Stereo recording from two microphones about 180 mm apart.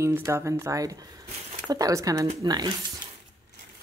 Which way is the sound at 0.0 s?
15° right (ahead or behind).